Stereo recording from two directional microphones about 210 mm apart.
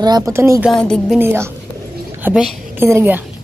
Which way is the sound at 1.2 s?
10° right (ahead or behind).